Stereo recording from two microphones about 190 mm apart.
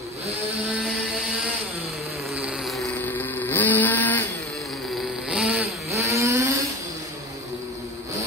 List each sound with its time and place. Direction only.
2.3 s vehicle: 5° right (ahead or behind)
5.3 s vehicle: 5° right (ahead or behind)